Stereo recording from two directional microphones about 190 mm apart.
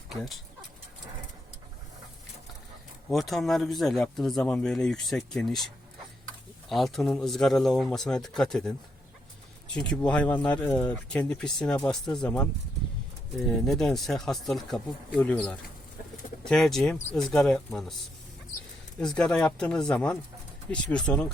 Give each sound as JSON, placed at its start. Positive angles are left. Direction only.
{"t": 0.1, "sound": "speech", "side_deg": 0}
{"t": 3.1, "sound": "speech", "side_deg": 0}
{"t": 6.7, "sound": "speech", "side_deg": 0}
{"t": 9.7, "sound": "speech", "side_deg": 5}
{"t": 13.7, "sound": "speech", "side_deg": 0}
{"t": 18.9, "sound": "speech", "side_deg": 5}